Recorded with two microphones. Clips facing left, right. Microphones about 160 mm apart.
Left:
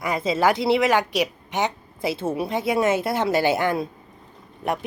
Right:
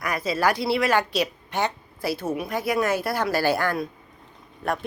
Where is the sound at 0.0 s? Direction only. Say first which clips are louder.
Left 3 dB; 25° left (ahead or behind).